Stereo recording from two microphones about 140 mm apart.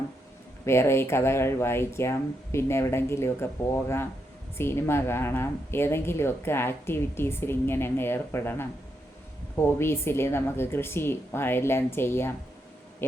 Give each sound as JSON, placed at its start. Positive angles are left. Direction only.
{"t": 0.6, "sound": "speech", "side_deg": 20}